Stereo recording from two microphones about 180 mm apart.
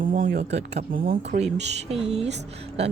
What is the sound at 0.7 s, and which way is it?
Speech, 60° right (ahead or behind).